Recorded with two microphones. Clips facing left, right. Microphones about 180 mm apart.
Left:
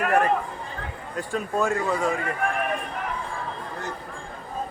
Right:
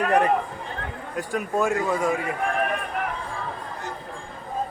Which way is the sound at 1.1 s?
5° right (ahead or behind).